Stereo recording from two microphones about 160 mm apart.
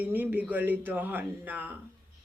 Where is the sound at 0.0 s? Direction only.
10° right (ahead or behind).